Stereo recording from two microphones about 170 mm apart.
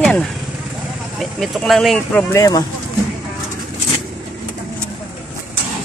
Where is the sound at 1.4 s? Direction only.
Centre (ahead or behind).